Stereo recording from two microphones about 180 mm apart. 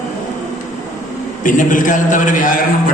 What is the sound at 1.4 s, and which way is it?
Speech, 45° left (ahead or behind).